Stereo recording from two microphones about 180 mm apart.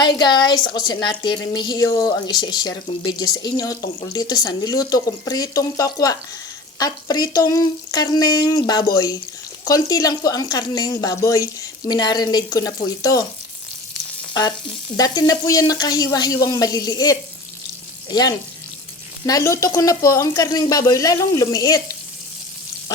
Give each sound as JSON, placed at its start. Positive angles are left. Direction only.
{"t": 0.0, "sound": "speech", "side_deg": 25}
{"t": 14.9, "sound": "speech", "side_deg": 20}